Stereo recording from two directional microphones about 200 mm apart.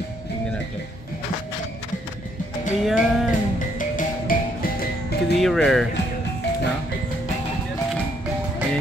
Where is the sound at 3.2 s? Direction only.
40° left (ahead or behind).